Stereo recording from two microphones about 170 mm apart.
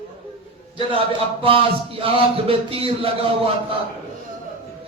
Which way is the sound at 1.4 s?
35° right (ahead or behind).